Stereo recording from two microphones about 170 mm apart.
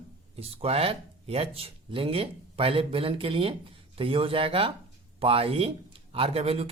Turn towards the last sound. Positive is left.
turn(degrees=-35)  # may be behind; listen again after turning